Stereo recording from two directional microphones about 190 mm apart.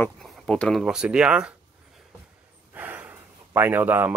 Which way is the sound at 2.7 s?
10° right (ahead or behind).